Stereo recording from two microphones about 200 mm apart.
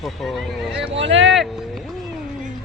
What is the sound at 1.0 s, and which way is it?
Speech, 65° right (ahead or behind).